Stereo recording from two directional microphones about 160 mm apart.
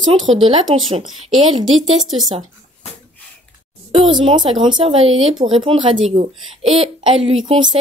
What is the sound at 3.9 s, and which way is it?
Speech, 35° right (ahead or behind).